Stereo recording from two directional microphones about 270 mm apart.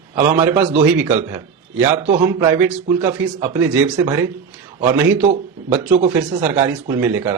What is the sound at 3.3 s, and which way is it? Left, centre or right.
A man's voice, right.